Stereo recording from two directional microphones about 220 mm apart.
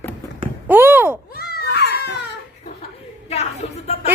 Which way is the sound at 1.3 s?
45° left (ahead or behind).